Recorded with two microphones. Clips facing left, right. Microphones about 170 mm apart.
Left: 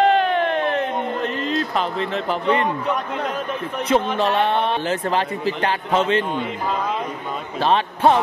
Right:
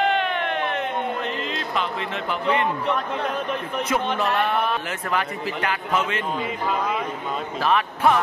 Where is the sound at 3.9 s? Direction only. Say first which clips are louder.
Left 5 dB; 30° left (ahead or behind).